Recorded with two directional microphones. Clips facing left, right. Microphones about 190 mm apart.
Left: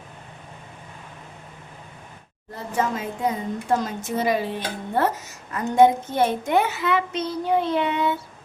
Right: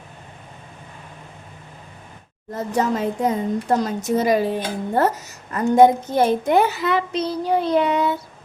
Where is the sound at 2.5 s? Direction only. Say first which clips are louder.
Right 4 dB; 40° right (ahead or behind).